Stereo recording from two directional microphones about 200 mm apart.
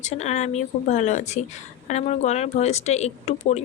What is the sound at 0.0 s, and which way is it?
A woman's voice, 35° left (ahead or behind).